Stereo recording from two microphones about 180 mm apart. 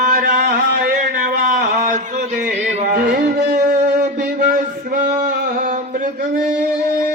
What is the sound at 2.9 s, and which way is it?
Music, 60° right (ahead or behind).